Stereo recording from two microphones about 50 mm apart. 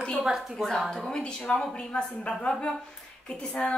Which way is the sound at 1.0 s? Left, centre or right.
Centre.